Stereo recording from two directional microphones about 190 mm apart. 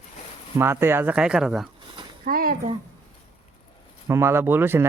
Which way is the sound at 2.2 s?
50° right (ahead or behind).